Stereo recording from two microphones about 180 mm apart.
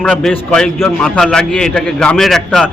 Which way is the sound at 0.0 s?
5° left (ahead or behind).